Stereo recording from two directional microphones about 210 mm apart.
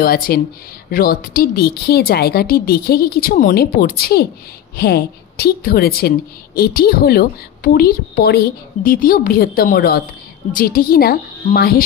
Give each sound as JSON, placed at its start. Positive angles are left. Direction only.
{"t": 0.0, "sound": "a woman's voice", "side_deg": 45}